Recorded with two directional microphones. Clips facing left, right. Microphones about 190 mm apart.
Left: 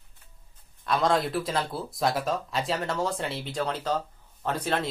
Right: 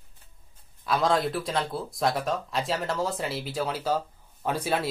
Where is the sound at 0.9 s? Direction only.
Centre (ahead or behind).